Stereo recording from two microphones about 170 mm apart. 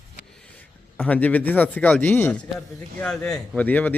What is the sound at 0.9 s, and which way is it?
A man's voice, 10° left (ahead or behind).